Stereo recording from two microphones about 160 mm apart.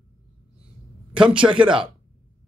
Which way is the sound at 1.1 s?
5° right (ahead or behind).